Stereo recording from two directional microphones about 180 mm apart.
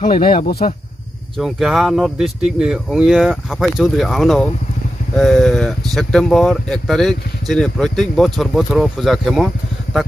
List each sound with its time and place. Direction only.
0.0 s speech: 30° left (ahead or behind)
1.4 s speech: centre (ahead or behind)